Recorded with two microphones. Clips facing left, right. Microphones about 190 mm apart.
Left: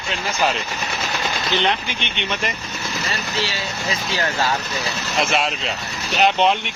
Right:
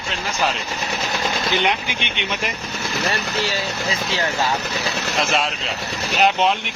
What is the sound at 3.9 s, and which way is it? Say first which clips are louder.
Speech: left 1 dB; 25° right (ahead or behind).